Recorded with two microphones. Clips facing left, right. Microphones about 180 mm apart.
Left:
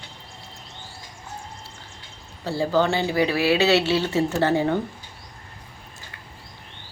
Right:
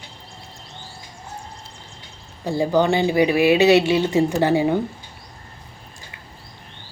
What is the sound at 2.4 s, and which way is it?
Speech, 15° right (ahead or behind).